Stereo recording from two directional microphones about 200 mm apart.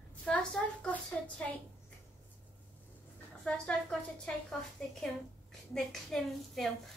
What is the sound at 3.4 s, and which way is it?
Speech, 5° left (ahead or behind).